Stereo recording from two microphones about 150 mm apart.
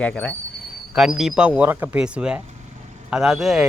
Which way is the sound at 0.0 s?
10° left (ahead or behind).